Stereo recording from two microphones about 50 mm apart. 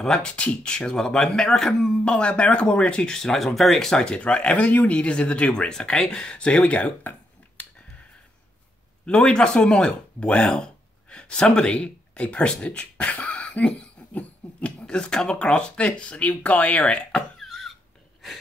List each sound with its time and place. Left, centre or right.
0.0 s speech: centre
2.0 s speech: left; by 3.9 s centre
3.9 s speech: centre
9.0 s speech: left
17.4 s a sound: centre